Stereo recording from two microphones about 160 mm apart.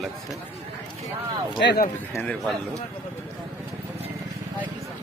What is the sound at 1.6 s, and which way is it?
Speech, 90° left.